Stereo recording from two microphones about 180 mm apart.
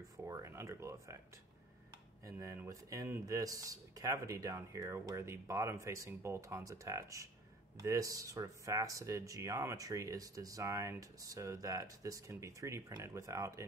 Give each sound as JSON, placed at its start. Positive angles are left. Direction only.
{"t": 0.2, "sound": "speech", "side_deg": -15}
{"t": 2.2, "sound": "speech", "side_deg": -15}